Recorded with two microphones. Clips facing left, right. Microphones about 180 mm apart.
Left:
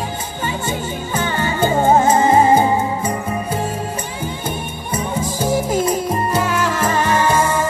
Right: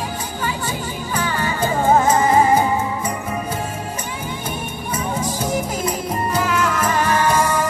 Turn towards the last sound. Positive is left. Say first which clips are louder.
# left 1 dB
turn(degrees=30)  # may be behind; listen again after turning